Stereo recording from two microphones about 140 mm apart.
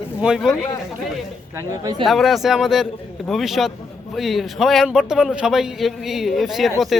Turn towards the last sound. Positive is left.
turn(degrees=0)  # may be behind; listen again after turning